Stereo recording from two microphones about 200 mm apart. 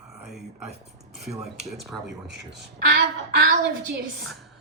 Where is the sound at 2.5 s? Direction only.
55° right (ahead or behind).